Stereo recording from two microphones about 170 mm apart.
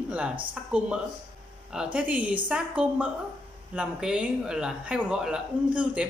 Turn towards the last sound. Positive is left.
turn(degrees=-5)  # may be behind; listen again after turning